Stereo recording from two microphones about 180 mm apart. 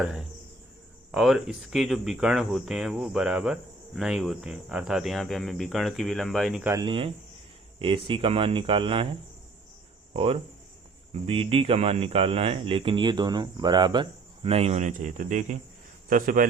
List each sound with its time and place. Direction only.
0.0 s speech: 5° right (ahead or behind)
6.6 s speech: 15° right (ahead or behind)
6.8 s speech: 30° right (ahead or behind)
10.1 s a man's voice: 30° right (ahead or behind); by 16.5 s 50° right (ahead or behind)